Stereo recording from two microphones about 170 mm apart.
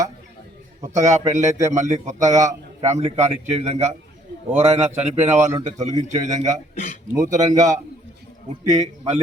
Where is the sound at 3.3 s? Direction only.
35° right (ahead or behind).